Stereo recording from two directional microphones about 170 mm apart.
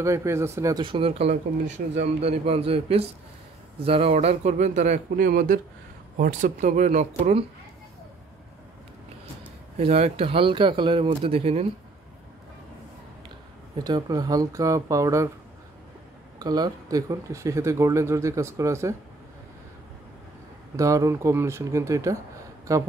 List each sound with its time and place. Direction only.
0.0 s a man's voice: 15° right (ahead or behind); by 7.4 s 45° right (ahead or behind)
9.8 s speech: 35° right (ahead or behind)
13.8 s speech: 25° right (ahead or behind)
16.3 s speech: 25° right (ahead or behind)
20.7 s speech: 20° right (ahead or behind)